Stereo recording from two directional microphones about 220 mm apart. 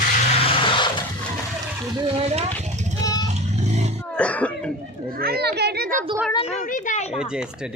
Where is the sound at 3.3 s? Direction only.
30° right (ahead or behind).